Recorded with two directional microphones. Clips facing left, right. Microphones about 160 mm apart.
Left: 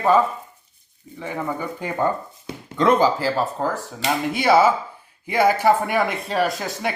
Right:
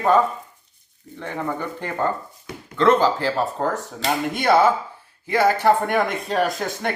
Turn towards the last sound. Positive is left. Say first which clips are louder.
# even
turn(degrees=0)  # may be behind; listen again after turning